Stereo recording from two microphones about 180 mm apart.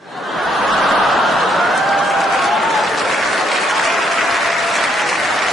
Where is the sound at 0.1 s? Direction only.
Centre (ahead or behind).